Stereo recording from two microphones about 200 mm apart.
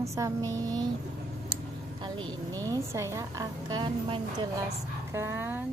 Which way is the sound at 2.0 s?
25° right (ahead or behind).